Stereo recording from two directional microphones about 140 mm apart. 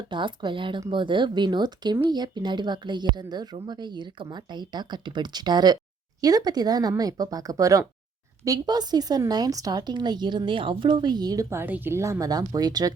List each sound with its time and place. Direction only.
0.1 s speech: 35° right (ahead or behind)